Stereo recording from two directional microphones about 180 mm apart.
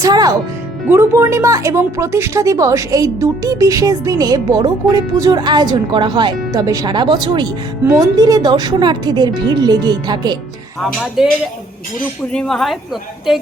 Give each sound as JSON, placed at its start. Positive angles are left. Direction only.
{"t": 0.0, "sound": "speech", "side_deg": -20}
{"t": 11.2, "sound": "a woman's voice", "side_deg": 0}